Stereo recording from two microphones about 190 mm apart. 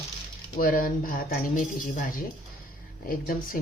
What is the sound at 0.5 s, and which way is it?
Speech, 45° left (ahead or behind).